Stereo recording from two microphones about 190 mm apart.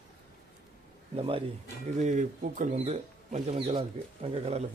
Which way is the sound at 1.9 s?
40° right (ahead or behind).